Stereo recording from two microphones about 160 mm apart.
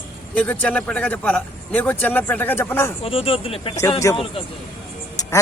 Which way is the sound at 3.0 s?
35° left (ahead or behind).